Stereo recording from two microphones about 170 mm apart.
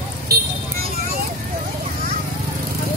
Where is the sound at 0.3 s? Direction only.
65° right (ahead or behind).